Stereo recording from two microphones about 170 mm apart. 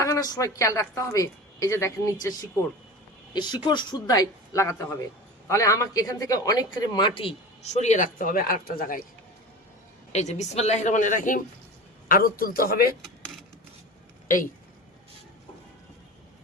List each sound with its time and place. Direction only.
0.0 s speech: 20° left (ahead or behind)
3.3 s speech: 25° left (ahead or behind); by 9.0 s 60° left (ahead or behind)
10.1 s a man's voice: 40° left (ahead or behind); by 12.9 s 60° left (ahead or behind)
14.3 s speech: 50° left (ahead or behind)